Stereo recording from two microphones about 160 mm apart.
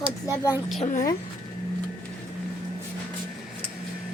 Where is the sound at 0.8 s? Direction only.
55° left (ahead or behind).